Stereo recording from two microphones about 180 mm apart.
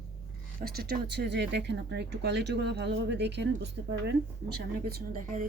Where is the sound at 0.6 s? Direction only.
60° right (ahead or behind).